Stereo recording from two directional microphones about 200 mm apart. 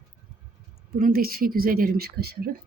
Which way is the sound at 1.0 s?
45° right (ahead or behind).